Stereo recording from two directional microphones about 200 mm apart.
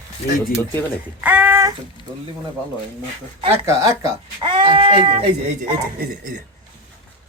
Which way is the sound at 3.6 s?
15° right (ahead or behind).